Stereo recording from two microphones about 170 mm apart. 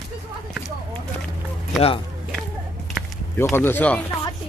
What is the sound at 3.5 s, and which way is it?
Speech, 10° left (ahead or behind).